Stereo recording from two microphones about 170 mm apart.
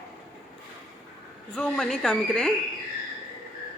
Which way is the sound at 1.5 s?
5° left (ahead or behind).